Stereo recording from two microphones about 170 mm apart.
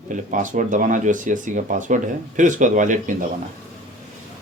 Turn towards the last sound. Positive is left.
turn(degrees=-50)  # may be behind; listen again after turning